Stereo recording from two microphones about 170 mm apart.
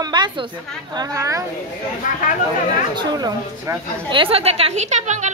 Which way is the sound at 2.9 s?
25° right (ahead or behind).